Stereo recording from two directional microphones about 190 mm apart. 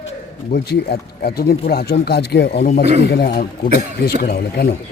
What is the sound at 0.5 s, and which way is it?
Speech, 60° left (ahead or behind).